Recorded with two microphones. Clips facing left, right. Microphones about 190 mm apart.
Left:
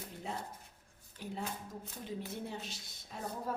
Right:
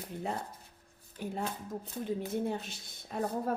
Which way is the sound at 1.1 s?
50° right (ahead or behind).